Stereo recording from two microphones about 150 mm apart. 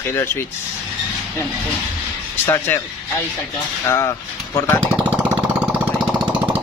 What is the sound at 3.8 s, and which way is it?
Speech, 20° left (ahead or behind).